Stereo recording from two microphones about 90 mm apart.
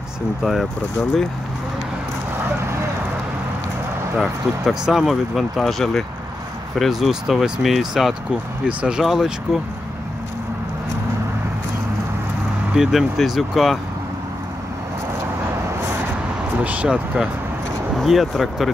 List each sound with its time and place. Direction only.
0.4 s speech: centre (ahead or behind)
2.4 s a sound: 30° right (ahead or behind)
4.2 s speech: 5° right (ahead or behind)
12.7 s speech: 5° right (ahead or behind)
16.5 s speech: 15° right (ahead or behind)
17.9 s speech: centre (ahead or behind)